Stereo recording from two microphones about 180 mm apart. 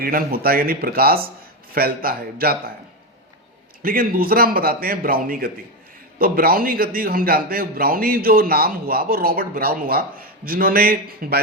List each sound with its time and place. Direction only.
0.0 s a man's voice: 55° right (ahead or behind)
3.8 s a man's voice: 55° right (ahead or behind)